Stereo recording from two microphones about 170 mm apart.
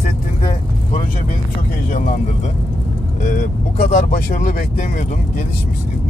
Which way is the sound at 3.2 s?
55° left (ahead or behind).